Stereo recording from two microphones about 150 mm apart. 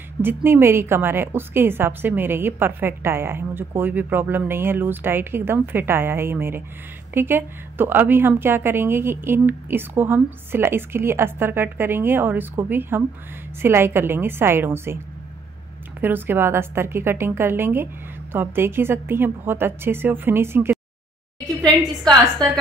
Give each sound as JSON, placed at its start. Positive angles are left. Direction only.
{"t": 0.2, "sound": "a woman's voice", "side_deg": -15}
{"t": 16.0, "sound": "a woman's voice", "side_deg": -15}